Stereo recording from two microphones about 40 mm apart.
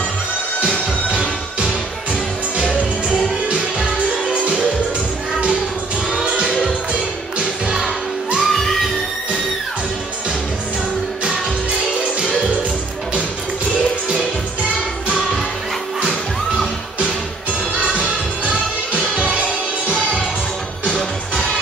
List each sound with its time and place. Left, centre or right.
1.1 s music: right
3.1 s music: right
6.2 s music: right
8.4 s music: centre
11.8 s music: right
17.7 s music: right
19.1 s music: right